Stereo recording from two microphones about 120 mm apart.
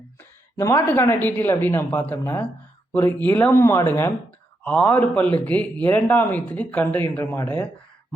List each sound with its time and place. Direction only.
0.2 s a woman's voice: 25° left (ahead or behind)